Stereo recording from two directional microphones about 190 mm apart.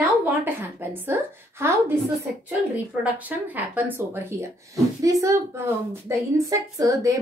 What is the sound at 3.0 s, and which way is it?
Speech, 10° right (ahead or behind).